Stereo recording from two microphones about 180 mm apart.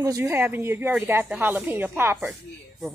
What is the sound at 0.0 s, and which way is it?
Speech, 15° right (ahead or behind).